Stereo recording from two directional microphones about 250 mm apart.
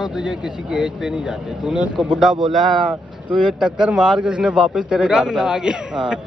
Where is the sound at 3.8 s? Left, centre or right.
Centre.